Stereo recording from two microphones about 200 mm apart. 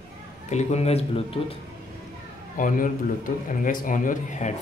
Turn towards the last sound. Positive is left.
turn(degrees=40)  # may be behind; listen again after turning